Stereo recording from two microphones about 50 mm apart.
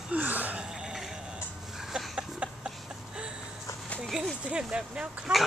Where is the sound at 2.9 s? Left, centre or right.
Centre.